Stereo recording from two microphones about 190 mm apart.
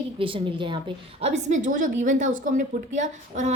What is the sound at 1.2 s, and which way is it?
A woman's voice, 40° right (ahead or behind).